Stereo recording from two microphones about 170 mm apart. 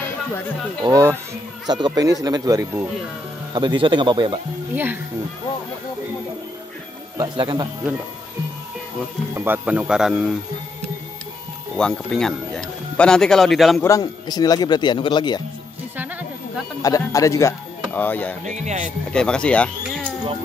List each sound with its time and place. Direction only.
0.8 s speech: 20° right (ahead or behind)
4.7 s speech: 10° right (ahead or behind)
7.2 s speech: 25° right (ahead or behind)
9.3 s speech: 10° right (ahead or behind)
11.7 s speech: 5° left (ahead or behind)
13.8 s speech: 20° left (ahead or behind)
16.8 s speech: 20° left (ahead or behind)
18.6 s speech: 45° right (ahead or behind)
19.0 s speech: 5° left (ahead or behind)